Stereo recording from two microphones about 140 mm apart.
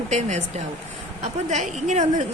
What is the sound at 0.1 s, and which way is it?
Speech, 55° right (ahead or behind).